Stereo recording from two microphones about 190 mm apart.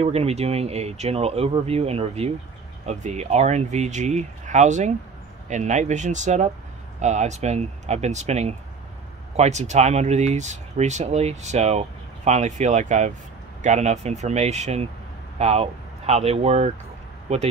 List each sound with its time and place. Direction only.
0.0 s speech: 35° right (ahead or behind)